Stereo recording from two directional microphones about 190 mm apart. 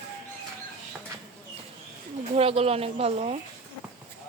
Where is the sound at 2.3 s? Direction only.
30° right (ahead or behind).